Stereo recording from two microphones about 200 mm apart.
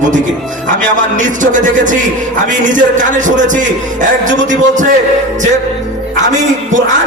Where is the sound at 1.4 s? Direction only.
40° right (ahead or behind).